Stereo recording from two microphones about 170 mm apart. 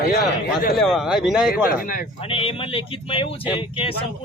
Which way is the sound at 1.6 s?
60° left (ahead or behind).